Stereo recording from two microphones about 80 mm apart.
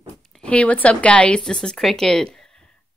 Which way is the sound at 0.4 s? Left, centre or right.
Centre.